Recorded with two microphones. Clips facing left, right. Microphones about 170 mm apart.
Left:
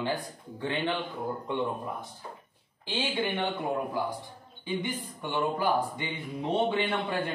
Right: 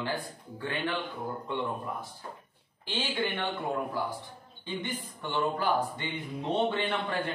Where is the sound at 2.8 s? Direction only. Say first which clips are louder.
Left 2 dB; 10° left (ahead or behind).